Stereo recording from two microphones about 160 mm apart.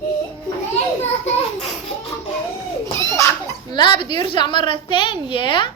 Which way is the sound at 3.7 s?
30° left (ahead or behind).